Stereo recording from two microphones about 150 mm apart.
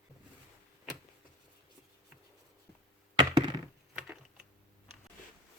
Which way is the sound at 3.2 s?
30° right (ahead or behind).